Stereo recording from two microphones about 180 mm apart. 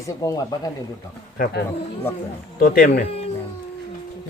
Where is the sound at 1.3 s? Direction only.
55° left (ahead or behind).